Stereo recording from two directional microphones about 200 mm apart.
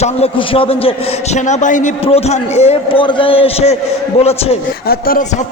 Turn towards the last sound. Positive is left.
turn(degrees=50)  # may be behind; listen again after turning